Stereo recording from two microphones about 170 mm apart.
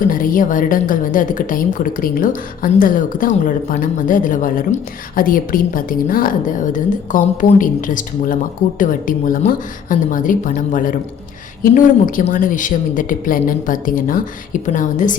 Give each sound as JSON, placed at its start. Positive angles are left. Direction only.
{"t": 0.0, "sound": "a woman's voice", "side_deg": 55}